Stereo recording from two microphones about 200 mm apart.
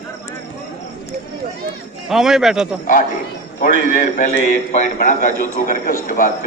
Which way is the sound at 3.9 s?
40° left (ahead or behind).